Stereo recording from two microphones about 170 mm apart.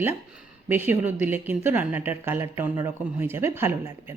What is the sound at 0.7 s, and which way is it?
A woman's voice, 10° right (ahead or behind).